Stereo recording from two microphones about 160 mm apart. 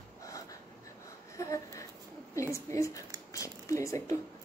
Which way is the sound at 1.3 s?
20° left (ahead or behind).